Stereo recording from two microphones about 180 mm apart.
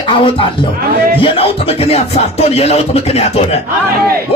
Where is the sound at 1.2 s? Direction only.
30° left (ahead or behind).